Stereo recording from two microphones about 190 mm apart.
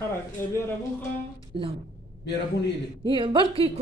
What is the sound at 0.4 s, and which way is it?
Speech, 15° left (ahead or behind).